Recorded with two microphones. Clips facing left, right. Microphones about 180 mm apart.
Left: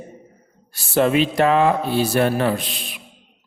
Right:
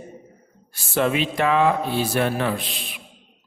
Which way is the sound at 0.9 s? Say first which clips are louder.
Left 4 dB; 40° left (ahead or behind).